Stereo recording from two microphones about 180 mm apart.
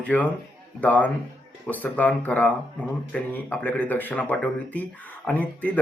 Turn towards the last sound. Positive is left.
turn(degrees=10)  # may be behind; listen again after turning